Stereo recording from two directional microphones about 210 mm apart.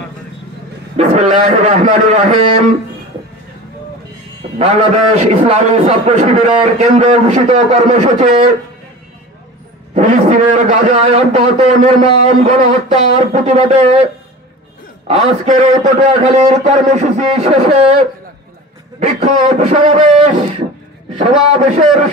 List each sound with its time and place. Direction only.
0.9 s a man's voice: 30° right (ahead or behind)
4.6 s a man's voice: 30° right (ahead or behind)
9.9 s a man's voice: 35° right (ahead or behind)
15.0 s a man's voice: 30° right (ahead or behind)
21.1 s a man's voice: 30° right (ahead or behind)